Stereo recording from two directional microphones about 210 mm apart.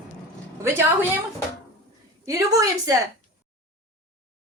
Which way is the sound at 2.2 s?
15° right (ahead or behind).